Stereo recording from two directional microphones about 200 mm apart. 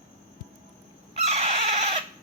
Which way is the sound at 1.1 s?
30° right (ahead or behind).